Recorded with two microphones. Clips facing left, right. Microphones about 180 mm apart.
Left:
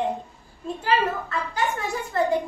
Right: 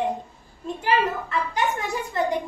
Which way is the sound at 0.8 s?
15° right (ahead or behind).